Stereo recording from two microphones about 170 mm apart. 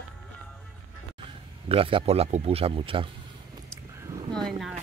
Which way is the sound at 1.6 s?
30° right (ahead or behind).